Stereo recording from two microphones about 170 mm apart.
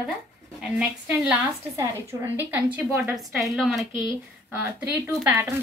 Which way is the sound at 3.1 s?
Centre (ahead or behind).